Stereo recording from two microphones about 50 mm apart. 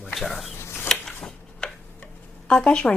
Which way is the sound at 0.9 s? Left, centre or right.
Centre.